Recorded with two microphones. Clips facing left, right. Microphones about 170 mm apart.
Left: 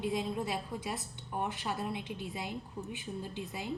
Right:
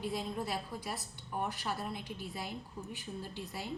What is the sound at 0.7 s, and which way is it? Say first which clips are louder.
A woman's voice: left 3 dB; 20° left (ahead or behind).